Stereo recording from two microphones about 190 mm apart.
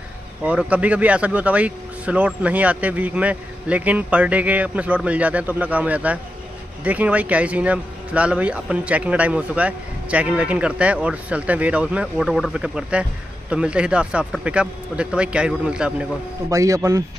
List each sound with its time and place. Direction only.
0.4 s speech: 5° right (ahead or behind)
16.4 s speech: 15° right (ahead or behind)